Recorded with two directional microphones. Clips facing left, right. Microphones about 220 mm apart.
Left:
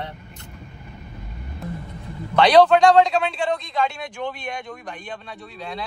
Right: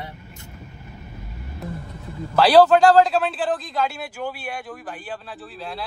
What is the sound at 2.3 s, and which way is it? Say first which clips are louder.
A man's voice: even; 5° right (ahead or behind).